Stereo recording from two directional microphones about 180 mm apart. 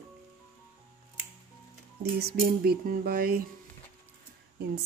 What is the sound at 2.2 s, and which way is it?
Music, 60° right (ahead or behind).